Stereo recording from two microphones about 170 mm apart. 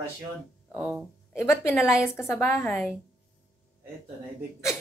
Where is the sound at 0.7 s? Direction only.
5° right (ahead or behind).